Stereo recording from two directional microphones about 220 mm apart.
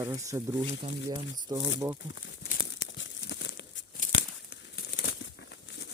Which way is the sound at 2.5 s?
50° left (ahead or behind).